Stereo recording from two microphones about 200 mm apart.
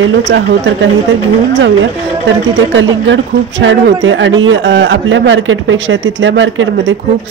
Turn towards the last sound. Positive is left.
turn(degrees=-65)  # may be behind; listen again after turning